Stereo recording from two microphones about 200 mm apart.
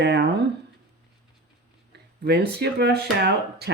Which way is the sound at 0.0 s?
55° right (ahead or behind).